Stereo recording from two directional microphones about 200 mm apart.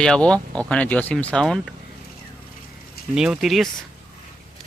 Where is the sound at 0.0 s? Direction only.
5° left (ahead or behind).